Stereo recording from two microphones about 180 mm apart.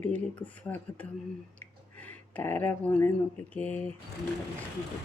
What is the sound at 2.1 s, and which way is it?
Speech, 10° left (ahead or behind).